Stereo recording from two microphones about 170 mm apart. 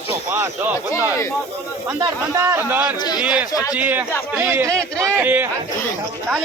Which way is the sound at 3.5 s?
20° left (ahead or behind).